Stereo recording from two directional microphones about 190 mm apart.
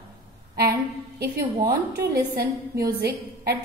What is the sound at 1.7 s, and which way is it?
A woman's voice, 55° right (ahead or behind).